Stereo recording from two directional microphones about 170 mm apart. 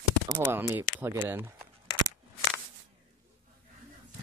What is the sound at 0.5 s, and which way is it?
Speech, 10° right (ahead or behind).